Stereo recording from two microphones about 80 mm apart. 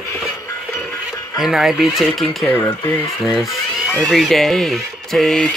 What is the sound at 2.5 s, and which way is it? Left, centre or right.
Speech, left.